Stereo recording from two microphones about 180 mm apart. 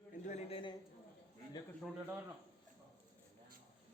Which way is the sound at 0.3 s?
35° left (ahead or behind).